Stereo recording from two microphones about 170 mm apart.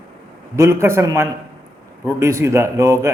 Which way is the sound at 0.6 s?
15° right (ahead or behind).